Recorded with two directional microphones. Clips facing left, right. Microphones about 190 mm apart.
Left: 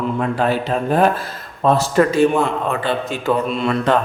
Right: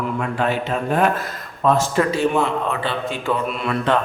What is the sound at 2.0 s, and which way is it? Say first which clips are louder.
A man's voice: left 4 dB; 50° left (ahead or behind).